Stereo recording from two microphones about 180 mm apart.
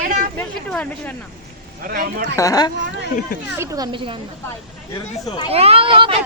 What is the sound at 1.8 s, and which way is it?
Speech, 55° right (ahead or behind).